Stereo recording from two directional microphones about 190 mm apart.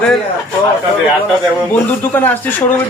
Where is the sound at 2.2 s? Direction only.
10° left (ahead or behind).